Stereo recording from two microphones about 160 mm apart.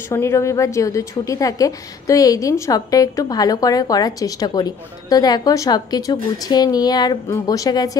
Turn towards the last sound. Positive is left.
turn(degrees=20)  # may be behind; listen again after turning